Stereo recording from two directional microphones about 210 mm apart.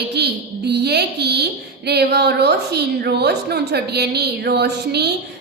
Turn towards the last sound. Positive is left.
turn(degrees=-50)  # may be behind; listen again after turning